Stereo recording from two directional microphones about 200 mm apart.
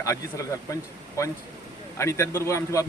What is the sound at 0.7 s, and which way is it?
A man's voice, 15° left (ahead or behind).